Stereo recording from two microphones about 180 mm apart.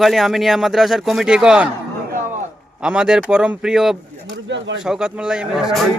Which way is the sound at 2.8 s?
5° right (ahead or behind).